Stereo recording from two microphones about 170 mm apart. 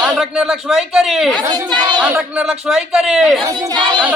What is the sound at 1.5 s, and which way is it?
Speech, 25° right (ahead or behind).